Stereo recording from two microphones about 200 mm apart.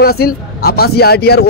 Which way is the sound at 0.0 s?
50° left (ahead or behind).